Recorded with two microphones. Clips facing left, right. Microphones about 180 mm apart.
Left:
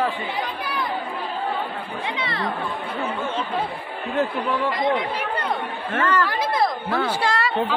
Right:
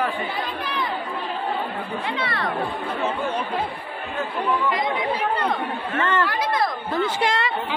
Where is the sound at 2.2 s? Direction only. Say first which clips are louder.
Right 1 dB; 20° left (ahead or behind).